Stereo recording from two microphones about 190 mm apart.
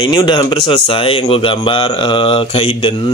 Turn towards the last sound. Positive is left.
turn(degrees=25)  # may be behind; listen again after turning